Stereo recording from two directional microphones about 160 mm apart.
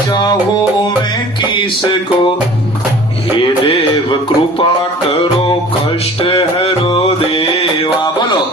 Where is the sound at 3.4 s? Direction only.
35° left (ahead or behind).